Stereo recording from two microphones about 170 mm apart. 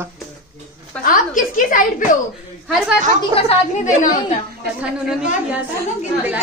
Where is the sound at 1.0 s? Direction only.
55° left (ahead or behind).